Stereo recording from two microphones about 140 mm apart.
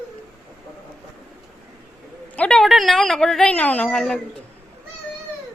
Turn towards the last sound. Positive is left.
turn(degrees=5)  # may be behind; listen again after turning